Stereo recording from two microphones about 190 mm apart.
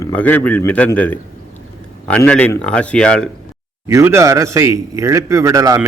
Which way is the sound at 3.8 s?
15° right (ahead or behind).